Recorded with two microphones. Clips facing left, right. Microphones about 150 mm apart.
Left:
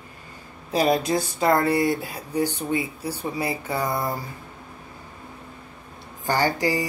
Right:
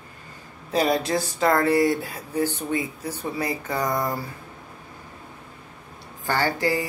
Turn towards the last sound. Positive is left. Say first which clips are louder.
# left 1 dB
turn(degrees=15)  # may be behind; listen again after turning